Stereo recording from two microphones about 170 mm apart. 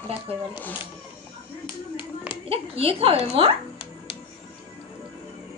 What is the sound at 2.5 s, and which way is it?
A woman's voice, 35° right (ahead or behind).